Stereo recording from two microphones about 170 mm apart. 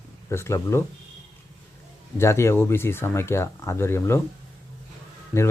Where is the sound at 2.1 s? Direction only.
15° left (ahead or behind).